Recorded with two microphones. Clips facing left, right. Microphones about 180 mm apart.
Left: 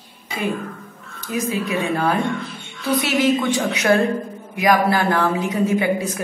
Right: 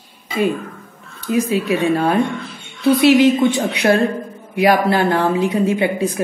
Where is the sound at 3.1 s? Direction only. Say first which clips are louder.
Right 5 dB; 30° right (ahead or behind).